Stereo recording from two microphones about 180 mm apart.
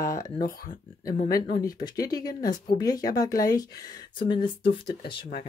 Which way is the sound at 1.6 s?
20° left (ahead or behind).